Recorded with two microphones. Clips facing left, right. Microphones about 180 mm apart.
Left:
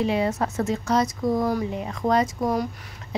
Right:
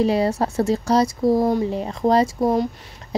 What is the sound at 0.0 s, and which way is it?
A woman's voice, 35° right (ahead or behind).